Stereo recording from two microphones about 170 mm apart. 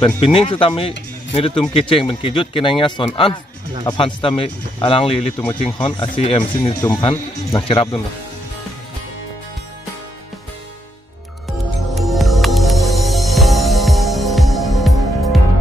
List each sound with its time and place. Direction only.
0.0 s speech: 30° left (ahead or behind)
11.9 s music: centre (ahead or behind)